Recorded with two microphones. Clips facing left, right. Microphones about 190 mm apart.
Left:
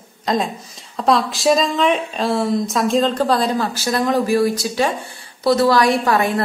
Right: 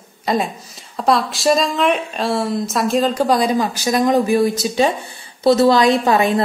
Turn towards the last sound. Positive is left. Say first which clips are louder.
# right 2 dB
turn(degrees=-20)  # may be behind; listen again after turning